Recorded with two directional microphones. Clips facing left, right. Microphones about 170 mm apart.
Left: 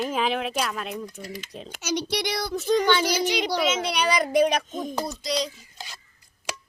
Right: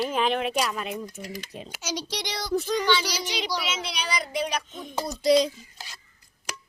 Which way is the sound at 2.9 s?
50° left (ahead or behind).